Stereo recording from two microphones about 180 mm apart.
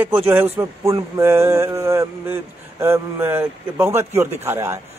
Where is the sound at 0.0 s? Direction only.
10° right (ahead or behind).